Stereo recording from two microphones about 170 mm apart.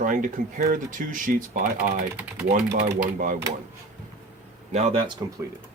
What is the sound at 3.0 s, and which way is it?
Speech, 50° right (ahead or behind).